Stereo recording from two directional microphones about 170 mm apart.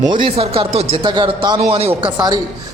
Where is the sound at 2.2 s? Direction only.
25° right (ahead or behind).